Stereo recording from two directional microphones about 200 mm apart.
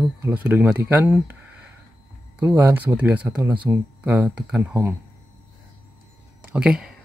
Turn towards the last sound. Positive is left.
turn(degrees=-5)  # may be behind; listen again after turning